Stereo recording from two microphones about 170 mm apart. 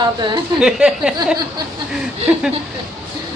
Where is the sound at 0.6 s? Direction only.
5° right (ahead or behind).